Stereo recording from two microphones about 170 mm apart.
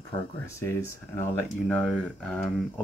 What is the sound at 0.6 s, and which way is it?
Speech, 15° left (ahead or behind).